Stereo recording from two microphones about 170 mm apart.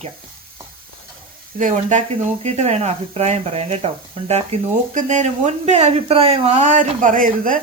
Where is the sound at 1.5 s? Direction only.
50° right (ahead or behind).